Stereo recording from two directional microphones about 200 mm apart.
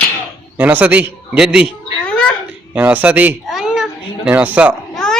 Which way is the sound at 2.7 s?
5° right (ahead or behind).